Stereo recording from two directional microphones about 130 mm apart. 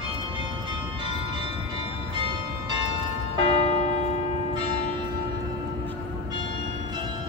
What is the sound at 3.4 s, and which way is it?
Church bell, 50° left (ahead or behind).